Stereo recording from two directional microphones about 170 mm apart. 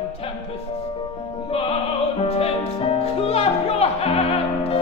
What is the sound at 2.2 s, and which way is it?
Music, 35° left (ahead or behind).